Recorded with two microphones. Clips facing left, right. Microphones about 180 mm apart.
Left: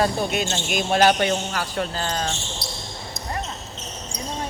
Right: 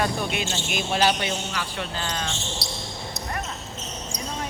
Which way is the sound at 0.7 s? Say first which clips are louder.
Left 5 dB; 50° left (ahead or behind).